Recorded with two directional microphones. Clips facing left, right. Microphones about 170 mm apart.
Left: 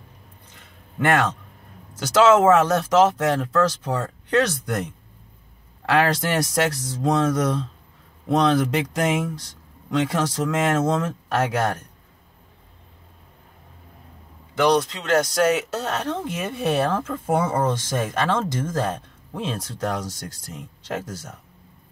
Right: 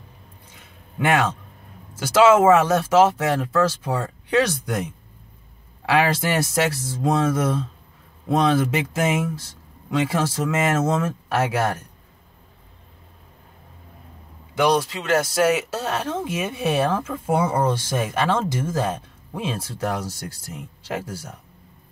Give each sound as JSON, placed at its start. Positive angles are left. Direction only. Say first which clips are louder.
{"t": 0.9, "sound": "speech", "louder": "even", "side_deg": -10}
{"t": 14.5, "sound": "speech", "louder": "left 1 dB", "side_deg": -10}